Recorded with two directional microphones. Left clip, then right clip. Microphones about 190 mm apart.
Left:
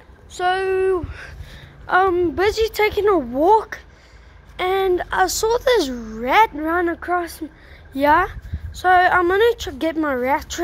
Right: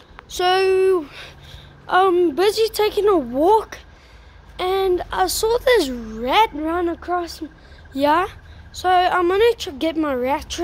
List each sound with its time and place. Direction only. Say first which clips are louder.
0.4 s speech: right 3 dB; 25° right (ahead or behind)
0.7 s a woman's voice: right 2 dB; 10° right (ahead or behind); by 10.6 s 5° left (ahead or behind)